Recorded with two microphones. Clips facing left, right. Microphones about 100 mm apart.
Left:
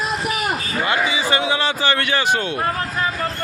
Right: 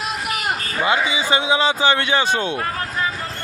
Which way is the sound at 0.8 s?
15° right (ahead or behind).